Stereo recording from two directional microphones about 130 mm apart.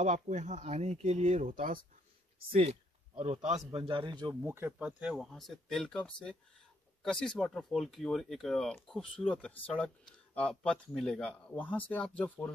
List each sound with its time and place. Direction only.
0.0 s speech: 65° right (ahead or behind)
2.5 s a man's voice: 50° right (ahead or behind); by 4.4 s 35° right (ahead or behind)
4.4 s speech: 15° right (ahead or behind); by 12.4 s 10° left (ahead or behind)